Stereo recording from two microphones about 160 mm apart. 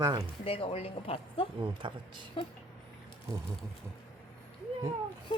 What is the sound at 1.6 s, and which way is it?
Speech, 30° right (ahead or behind).